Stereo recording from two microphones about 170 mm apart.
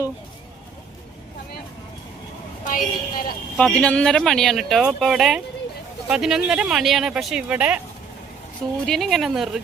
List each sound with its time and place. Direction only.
2.6 s a woman's voice: 55° left (ahead or behind)
3.6 s speech: 5° left (ahead or behind); by 7.8 s 10° right (ahead or behind)
8.9 s speech: centre (ahead or behind)